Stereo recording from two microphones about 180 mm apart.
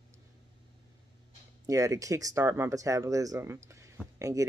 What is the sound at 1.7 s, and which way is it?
Speech, 20° right (ahead or behind).